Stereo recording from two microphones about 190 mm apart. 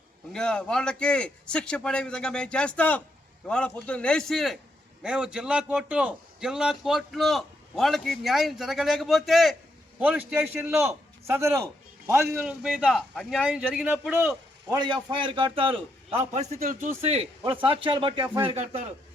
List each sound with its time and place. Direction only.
0.3 s a man's voice: 5° left (ahead or behind)
14.7 s a man's voice: 25° right (ahead or behind); by 16.9 s 45° right (ahead or behind)
17.0 s a man's voice: 35° right (ahead or behind)